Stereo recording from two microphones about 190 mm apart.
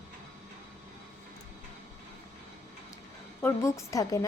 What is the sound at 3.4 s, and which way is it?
Speech, 15° left (ahead or behind).